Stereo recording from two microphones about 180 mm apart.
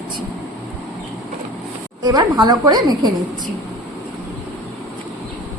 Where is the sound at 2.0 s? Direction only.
20° right (ahead or behind).